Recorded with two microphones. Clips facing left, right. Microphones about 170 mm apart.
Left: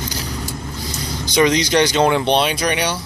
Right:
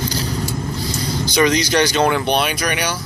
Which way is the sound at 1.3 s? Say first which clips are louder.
Left 1 dB; 20° left (ahead or behind).